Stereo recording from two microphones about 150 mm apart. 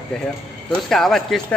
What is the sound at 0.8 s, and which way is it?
Speech, centre (ahead or behind).